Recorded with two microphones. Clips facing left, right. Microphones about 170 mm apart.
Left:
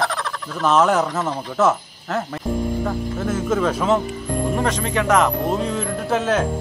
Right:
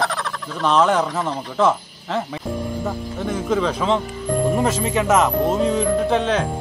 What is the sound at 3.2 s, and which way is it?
Speech, 5° left (ahead or behind).